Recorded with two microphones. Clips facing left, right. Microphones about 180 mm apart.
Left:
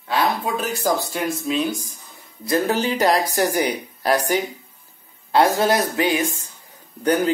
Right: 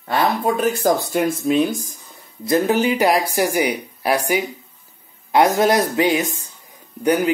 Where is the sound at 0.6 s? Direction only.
55° right (ahead or behind).